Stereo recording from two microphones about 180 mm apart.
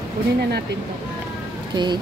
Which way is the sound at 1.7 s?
25° right (ahead or behind).